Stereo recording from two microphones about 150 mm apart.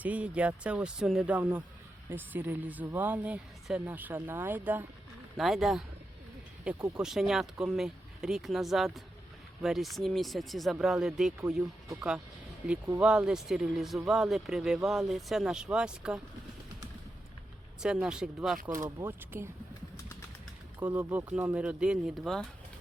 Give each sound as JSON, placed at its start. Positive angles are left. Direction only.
{"t": 0.0, "sound": "a woman's voice", "side_deg": -10}
{"t": 5.4, "sound": "speech", "side_deg": 0}
{"t": 6.7, "sound": "speech", "side_deg": -25}
{"t": 7.0, "sound": "speech", "side_deg": -5}
{"t": 17.8, "sound": "speech", "side_deg": -5}
{"t": 19.0, "sound": "a woman's voice", "side_deg": -15}
{"t": 20.9, "sound": "a woman's voice", "side_deg": -10}